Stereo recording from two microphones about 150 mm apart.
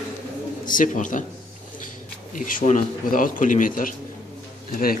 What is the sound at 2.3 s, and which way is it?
A man's voice, 60° left (ahead or behind).